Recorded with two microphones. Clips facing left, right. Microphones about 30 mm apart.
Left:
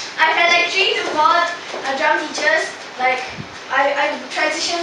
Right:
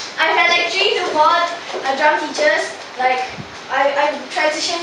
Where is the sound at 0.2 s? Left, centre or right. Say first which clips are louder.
Even; centre.